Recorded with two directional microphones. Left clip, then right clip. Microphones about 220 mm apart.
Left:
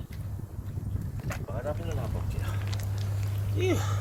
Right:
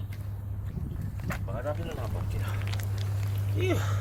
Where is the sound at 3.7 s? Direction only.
20° left (ahead or behind).